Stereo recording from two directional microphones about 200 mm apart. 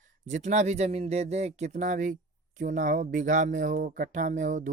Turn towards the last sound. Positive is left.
turn(degrees=-40)  # may be behind; listen again after turning